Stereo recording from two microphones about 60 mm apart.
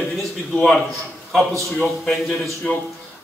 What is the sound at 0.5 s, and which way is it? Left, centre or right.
Speech, centre.